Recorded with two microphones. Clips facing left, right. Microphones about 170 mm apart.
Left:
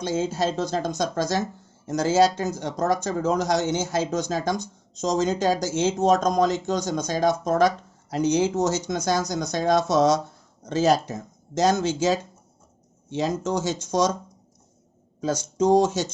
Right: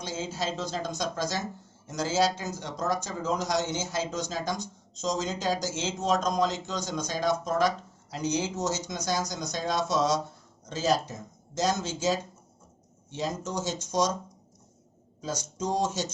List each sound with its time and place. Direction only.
0.0 s speech: 55° left (ahead or behind)
15.5 s speech: 65° left (ahead or behind)